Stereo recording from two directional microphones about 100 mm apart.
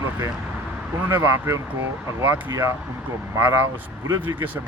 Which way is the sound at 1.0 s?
25° right (ahead or behind).